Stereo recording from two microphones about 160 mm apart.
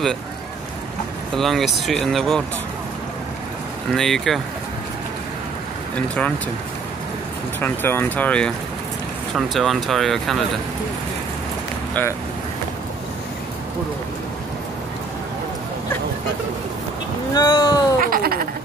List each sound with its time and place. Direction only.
1.3 s speech: centre (ahead or behind)
3.9 s speech: centre (ahead or behind)
5.9 s speech: 10° left (ahead or behind)
7.6 s speech: 15° left (ahead or behind)
17.3 s speech: 25° left (ahead or behind)
18.0 s a sound: 65° right (ahead or behind)